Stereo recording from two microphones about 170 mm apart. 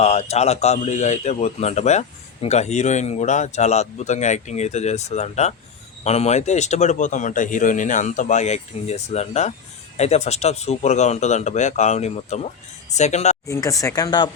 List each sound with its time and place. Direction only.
0.0 s a man's voice: 40° left (ahead or behind)
13.5 s speech: 20° left (ahead or behind)